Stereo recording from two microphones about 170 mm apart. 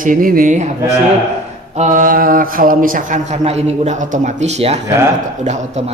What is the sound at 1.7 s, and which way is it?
Speech, 45° right (ahead or behind).